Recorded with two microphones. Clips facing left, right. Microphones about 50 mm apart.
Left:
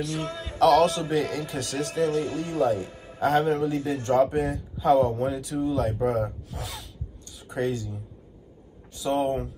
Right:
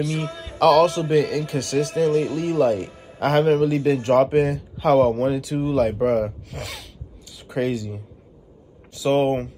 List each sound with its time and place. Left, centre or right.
0.0 s a man's voice: centre
0.6 s a man's voice: right
1.1 s a man's voice: right
6.0 s a sound: right
8.9 s a man's voice: right